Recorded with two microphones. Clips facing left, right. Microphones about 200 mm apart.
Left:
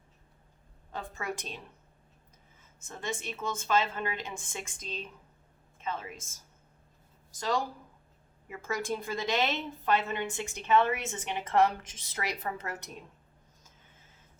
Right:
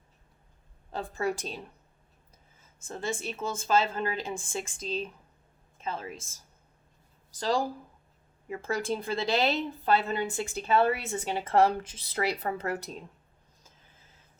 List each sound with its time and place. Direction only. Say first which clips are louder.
0.9 s a woman's voice: right 6 dB; 35° right (ahead or behind)
2.8 s a woman's voice: right 4 dB; 30° right (ahead or behind)